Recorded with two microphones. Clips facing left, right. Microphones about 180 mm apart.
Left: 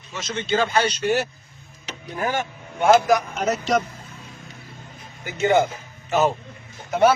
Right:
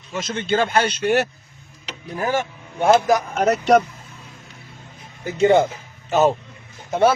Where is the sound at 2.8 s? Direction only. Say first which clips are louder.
Even; 25° right (ahead or behind).